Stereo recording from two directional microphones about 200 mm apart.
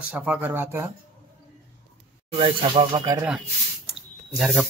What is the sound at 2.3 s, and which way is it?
Speech, 25° right (ahead or behind).